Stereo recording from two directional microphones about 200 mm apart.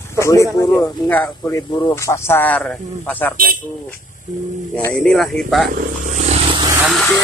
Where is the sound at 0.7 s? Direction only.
10° left (ahead or behind).